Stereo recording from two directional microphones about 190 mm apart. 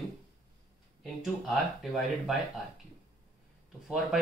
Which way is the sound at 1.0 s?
Centre (ahead or behind).